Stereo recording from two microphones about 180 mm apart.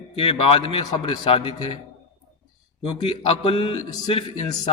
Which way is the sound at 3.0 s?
30° left (ahead or behind).